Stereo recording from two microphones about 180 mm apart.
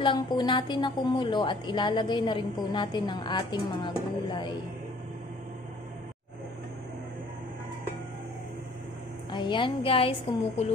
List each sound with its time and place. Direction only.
0.0 s a woman's voice: 25° left (ahead or behind)
9.3 s a woman's voice: 25° left (ahead or behind)